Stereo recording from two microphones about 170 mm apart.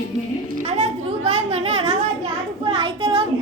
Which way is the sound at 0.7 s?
40° right (ahead or behind).